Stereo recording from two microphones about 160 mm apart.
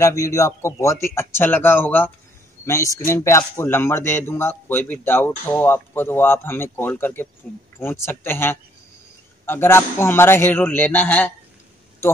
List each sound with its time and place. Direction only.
0.0 s a man's voice: 20° left (ahead or behind)